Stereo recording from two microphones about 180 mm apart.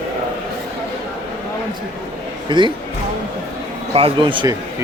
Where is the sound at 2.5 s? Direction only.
25° right (ahead or behind).